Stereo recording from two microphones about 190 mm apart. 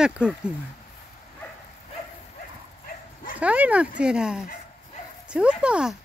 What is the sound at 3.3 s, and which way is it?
Speech, 5° right (ahead or behind).